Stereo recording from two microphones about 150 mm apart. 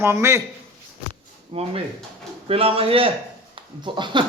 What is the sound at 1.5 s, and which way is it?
A man's voice, 40° right (ahead or behind).